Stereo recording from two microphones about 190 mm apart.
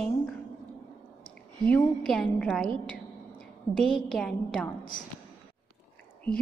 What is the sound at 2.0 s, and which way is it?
Speech, centre (ahead or behind).